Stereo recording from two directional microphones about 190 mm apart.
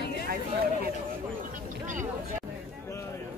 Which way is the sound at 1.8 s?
40° right (ahead or behind).